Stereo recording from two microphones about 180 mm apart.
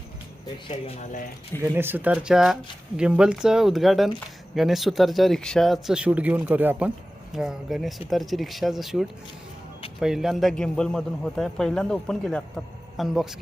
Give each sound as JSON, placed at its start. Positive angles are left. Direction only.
{"t": 0.7, "sound": "speech", "side_deg": 40}
{"t": 1.6, "sound": "speech", "side_deg": -10}